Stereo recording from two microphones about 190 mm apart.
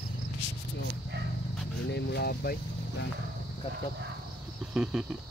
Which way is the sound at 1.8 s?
60° left (ahead or behind).